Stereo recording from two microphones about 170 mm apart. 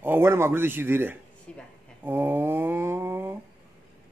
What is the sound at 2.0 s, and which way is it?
A man's voice, 10° right (ahead or behind).